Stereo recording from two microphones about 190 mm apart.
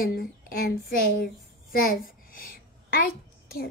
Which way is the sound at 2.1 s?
50° left (ahead or behind).